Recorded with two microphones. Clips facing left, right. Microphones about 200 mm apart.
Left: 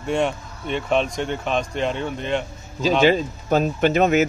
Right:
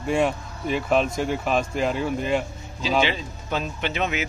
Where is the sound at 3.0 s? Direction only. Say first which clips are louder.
Left 7 dB; 45° left (ahead or behind).